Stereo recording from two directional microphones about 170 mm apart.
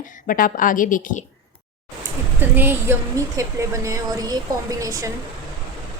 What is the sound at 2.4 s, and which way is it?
A woman's voice, 10° right (ahead or behind).